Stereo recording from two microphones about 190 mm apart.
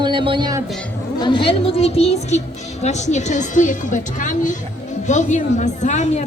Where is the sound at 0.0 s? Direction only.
25° right (ahead or behind).